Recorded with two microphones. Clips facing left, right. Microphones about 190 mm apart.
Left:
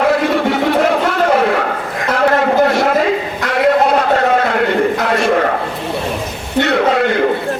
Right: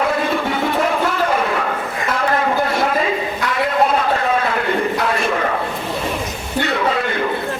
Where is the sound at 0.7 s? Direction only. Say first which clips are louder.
Left 5 dB; 70° left (ahead or behind).